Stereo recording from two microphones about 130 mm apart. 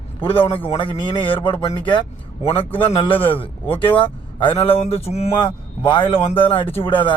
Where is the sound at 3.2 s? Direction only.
45° left (ahead or behind).